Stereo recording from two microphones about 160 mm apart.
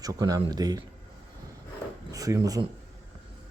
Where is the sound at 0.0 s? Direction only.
25° right (ahead or behind).